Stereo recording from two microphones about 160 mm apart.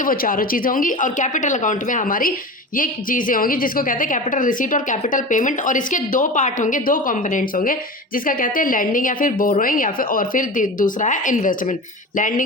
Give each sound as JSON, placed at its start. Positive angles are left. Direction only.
{"t": 0.0, "sound": "a woman's voice", "side_deg": 60}